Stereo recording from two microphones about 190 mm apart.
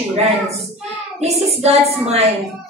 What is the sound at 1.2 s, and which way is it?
A woman's voice, 35° right (ahead or behind).